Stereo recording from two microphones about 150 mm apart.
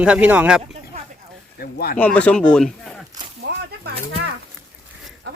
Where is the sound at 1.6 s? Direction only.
90° left.